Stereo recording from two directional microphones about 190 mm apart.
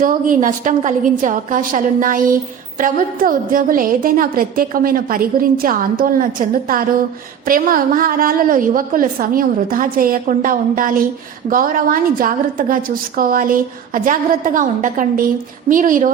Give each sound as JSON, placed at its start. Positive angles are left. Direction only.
{"t": 0.0, "sound": "a woman's voice", "side_deg": -45}